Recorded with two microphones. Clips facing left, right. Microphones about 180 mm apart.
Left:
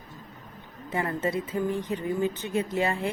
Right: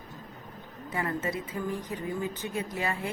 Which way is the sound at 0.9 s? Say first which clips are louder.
Left 4 dB; 30° left (ahead or behind).